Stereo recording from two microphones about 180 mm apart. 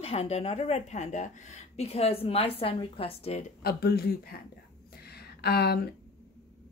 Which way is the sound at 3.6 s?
60° left (ahead or behind).